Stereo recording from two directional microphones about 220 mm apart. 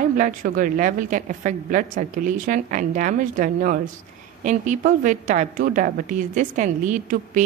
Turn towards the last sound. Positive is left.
turn(degrees=-35)  # may be behind; listen again after turning